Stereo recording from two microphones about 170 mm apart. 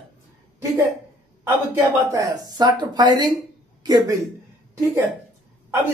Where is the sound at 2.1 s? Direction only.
20° right (ahead or behind).